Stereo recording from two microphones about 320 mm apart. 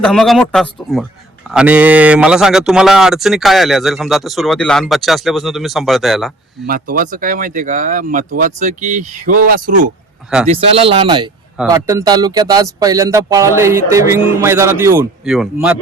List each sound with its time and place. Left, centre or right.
0.0 s speech: centre
6.7 s speech: right; by 15.8 s centre